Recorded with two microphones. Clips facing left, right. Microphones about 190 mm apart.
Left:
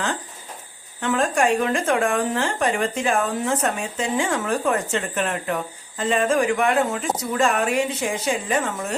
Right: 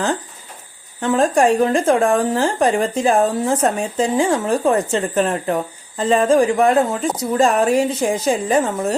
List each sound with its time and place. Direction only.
1.0 s speech: 35° right (ahead or behind)